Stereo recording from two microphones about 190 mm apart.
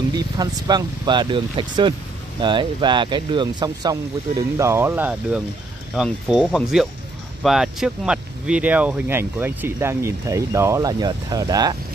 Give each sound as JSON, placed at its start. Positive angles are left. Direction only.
{"t": 0.1, "sound": "speech", "side_deg": -20}